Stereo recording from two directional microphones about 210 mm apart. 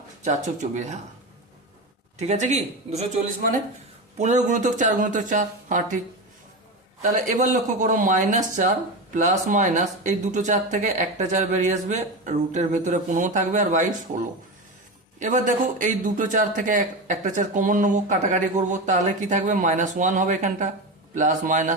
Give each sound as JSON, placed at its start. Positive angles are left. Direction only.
{"t": 0.3, "sound": "a man's voice", "side_deg": -35}
{"t": 2.1, "sound": "a man's voice", "side_deg": -35}
{"t": 4.2, "sound": "a man's voice", "side_deg": -35}
{"t": 7.0, "sound": "a man's voice", "side_deg": -35}
{"t": 15.2, "sound": "a man's voice", "side_deg": -35}